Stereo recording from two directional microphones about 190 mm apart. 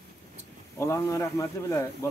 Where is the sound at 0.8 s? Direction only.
15° left (ahead or behind).